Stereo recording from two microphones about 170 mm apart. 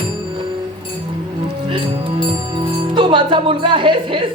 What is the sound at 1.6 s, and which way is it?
Speech, 30° right (ahead or behind).